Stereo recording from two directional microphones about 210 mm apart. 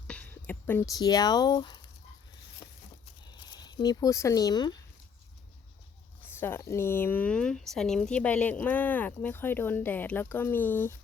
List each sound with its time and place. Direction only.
0.1 s speech: 5° left (ahead or behind)
2.6 s a sound: 20° left (ahead or behind)
3.4 s speech: 20° left (ahead or behind)
6.4 s speech: 10° left (ahead or behind)